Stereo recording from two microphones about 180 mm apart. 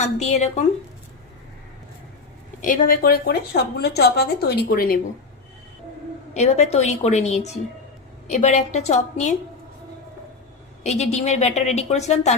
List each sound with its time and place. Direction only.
0.0 s a woman's voice: 40° left (ahead or behind)
2.6 s a woman's voice: 50° left (ahead or behind)
6.3 s a woman's voice: 40° left (ahead or behind)
10.8 s a woman's voice: 40° left (ahead or behind)